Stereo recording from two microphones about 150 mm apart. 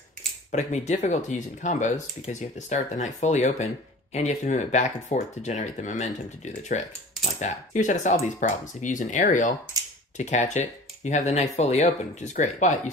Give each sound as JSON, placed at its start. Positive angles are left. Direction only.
{"t": 0.5, "sound": "speech", "side_deg": 50}